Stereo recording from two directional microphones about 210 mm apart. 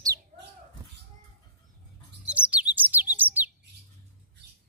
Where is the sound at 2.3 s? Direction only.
5° right (ahead or behind).